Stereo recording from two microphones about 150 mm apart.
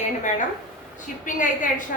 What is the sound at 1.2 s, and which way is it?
Speech, 60° left (ahead or behind).